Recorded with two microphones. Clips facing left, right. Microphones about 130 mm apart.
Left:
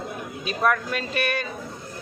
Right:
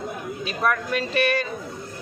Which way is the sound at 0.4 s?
20° left (ahead or behind).